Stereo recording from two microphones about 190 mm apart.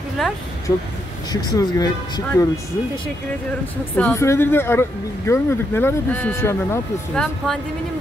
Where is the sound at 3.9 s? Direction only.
10° left (ahead or behind).